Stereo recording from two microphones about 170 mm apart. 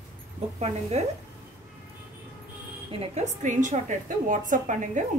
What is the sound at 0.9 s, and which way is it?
Speech, 40° right (ahead or behind).